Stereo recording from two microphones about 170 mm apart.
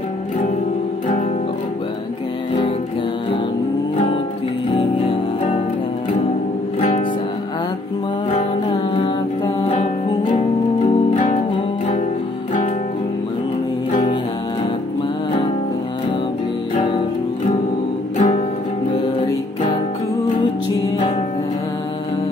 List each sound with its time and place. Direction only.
8.6 s music: 25° left (ahead or behind)
9.7 s music: 40° left (ahead or behind)
18.1 s music: 45° left (ahead or behind)